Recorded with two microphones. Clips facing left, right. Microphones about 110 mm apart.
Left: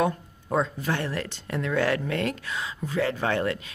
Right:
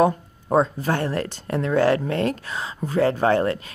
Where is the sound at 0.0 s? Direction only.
35° right (ahead or behind).